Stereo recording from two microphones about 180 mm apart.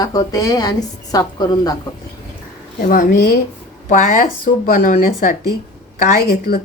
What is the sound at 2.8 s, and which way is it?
A woman's voice, 50° left (ahead or behind).